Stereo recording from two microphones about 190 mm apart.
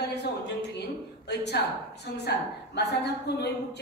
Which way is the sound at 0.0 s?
60° left (ahead or behind).